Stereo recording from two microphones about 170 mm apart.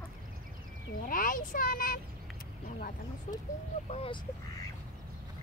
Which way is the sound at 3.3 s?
45° left (ahead or behind).